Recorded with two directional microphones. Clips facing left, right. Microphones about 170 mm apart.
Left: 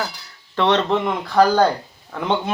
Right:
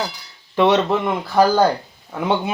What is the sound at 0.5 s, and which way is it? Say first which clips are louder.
Speech: right 2 dB; 10° right (ahead or behind).